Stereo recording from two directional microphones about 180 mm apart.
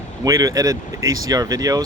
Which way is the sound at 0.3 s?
20° right (ahead or behind).